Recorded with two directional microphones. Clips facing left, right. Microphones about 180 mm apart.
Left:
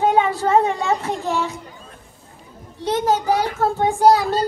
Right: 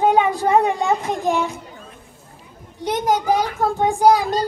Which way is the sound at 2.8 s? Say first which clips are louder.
Even; 15° right (ahead or behind).